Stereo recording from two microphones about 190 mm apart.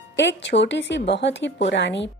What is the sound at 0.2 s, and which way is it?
Speech, 70° left (ahead or behind).